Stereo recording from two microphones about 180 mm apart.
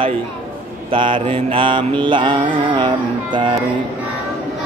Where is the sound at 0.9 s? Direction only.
30° right (ahead or behind).